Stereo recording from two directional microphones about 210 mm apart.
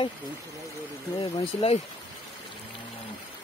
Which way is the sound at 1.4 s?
30° left (ahead or behind).